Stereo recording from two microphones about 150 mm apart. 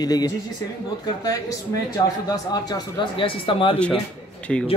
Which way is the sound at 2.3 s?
25° left (ahead or behind).